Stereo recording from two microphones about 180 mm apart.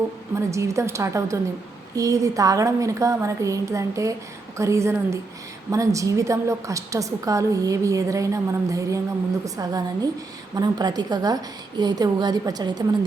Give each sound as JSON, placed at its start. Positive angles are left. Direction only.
{"t": 0.3, "sound": "a woman's voice", "side_deg": -15}